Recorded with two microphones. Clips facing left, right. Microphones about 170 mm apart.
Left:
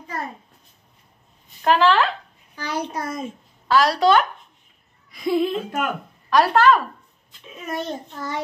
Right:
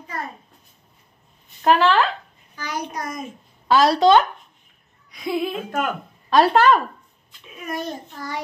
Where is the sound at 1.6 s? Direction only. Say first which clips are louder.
Even; centre (ahead or behind).